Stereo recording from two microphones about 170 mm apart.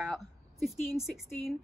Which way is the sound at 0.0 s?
Centre (ahead or behind).